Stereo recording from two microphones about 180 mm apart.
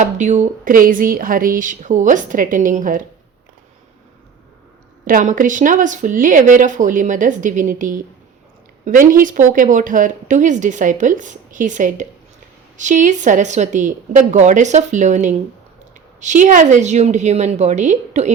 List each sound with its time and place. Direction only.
0.0 s speech: 40° right (ahead or behind)
5.0 s a woman's voice: 50° right (ahead or behind)